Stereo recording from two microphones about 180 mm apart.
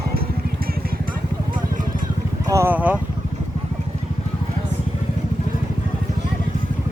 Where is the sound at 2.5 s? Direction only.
10° right (ahead or behind).